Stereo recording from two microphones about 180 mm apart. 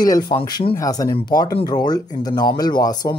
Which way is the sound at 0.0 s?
20° left (ahead or behind).